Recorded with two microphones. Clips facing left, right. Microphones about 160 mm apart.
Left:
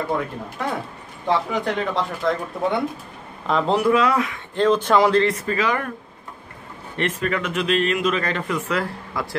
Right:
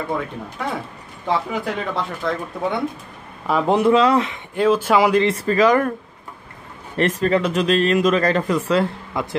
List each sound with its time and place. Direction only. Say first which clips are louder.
0.1 s speech: even; centre (ahead or behind)
3.7 s speech: right 4 dB; 25° right (ahead or behind)
4.6 s speech: right 1 dB; 5° right (ahead or behind)
5.3 s speech: right 7 dB; 35° right (ahead or behind)
7.0 s speech: right 6 dB; 35° right (ahead or behind); by 9.3 s 20° right (ahead or behind)